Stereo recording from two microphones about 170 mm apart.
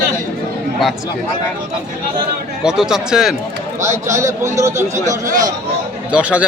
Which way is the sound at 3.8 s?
15° right (ahead or behind).